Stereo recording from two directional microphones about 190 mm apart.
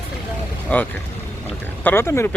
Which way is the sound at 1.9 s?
15° left (ahead or behind).